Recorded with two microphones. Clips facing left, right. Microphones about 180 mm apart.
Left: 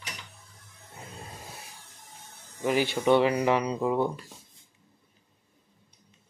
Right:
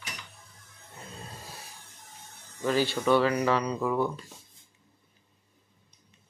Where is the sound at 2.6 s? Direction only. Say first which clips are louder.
Left 1 dB; 15° left (ahead or behind).